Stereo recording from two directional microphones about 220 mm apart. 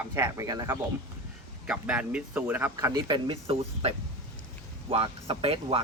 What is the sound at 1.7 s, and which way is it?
Speech, 5° right (ahead or behind).